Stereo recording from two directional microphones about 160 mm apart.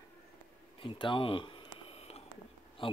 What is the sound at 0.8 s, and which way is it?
Speech, 30° left (ahead or behind).